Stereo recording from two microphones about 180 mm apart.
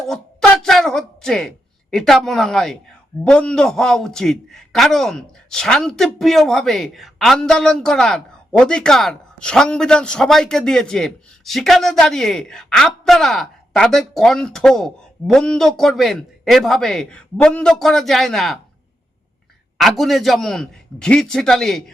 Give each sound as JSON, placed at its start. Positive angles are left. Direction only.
{"t": 0.6, "sound": "a man's voice", "side_deg": 0}
{"t": 19.8, "sound": "a man's voice", "side_deg": 0}